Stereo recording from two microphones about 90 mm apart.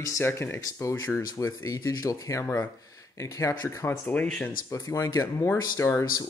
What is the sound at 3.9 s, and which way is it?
Speech, 20° left (ahead or behind).